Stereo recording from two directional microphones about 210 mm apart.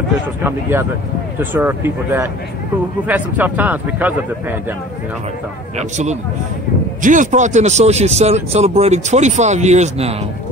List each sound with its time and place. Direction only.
0.4 s a man's voice: 10° right (ahead or behind)
5.8 s speech: 35° right (ahead or behind)